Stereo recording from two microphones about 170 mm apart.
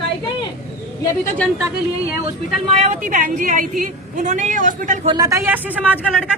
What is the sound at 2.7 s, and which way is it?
A woman's voice, 40° right (ahead or behind).